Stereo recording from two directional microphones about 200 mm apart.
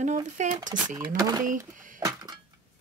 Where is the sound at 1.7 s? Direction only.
40° right (ahead or behind).